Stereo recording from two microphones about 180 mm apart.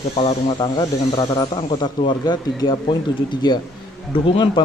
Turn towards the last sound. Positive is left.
turn(degrees=30)  # may be behind; listen again after turning